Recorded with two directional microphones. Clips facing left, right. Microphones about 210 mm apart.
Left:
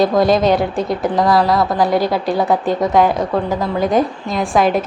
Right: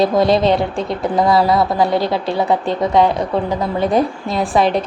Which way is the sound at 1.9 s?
25° right (ahead or behind).